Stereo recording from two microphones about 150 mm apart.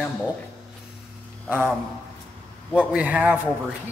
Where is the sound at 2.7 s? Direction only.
10° right (ahead or behind).